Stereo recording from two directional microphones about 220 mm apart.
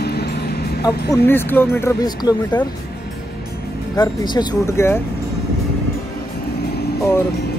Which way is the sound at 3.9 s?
20° left (ahead or behind).